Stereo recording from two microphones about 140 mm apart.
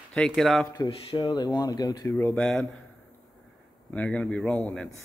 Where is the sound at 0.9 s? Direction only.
40° left (ahead or behind).